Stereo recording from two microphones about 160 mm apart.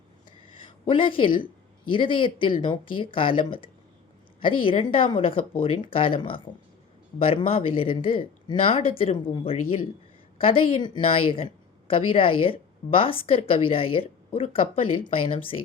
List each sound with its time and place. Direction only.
0.9 s a woman's voice: 35° left (ahead or behind)